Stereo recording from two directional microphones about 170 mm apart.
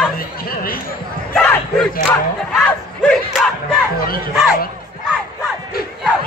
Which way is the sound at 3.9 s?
60° left (ahead or behind).